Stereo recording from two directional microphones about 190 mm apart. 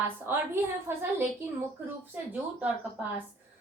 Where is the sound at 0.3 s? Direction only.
10° right (ahead or behind).